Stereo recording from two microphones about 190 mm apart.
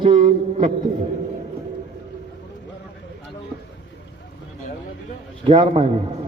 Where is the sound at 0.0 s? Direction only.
30° right (ahead or behind).